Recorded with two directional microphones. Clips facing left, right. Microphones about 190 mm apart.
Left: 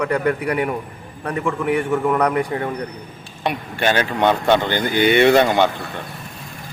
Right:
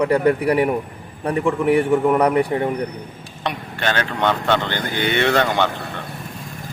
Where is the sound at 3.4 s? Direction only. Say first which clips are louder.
Left 3 dB; 10° left (ahead or behind).